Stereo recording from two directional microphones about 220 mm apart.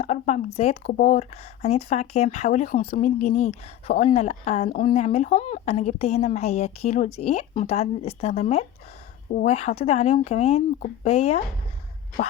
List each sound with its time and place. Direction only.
0.0 s a woman's voice: 30° left (ahead or behind)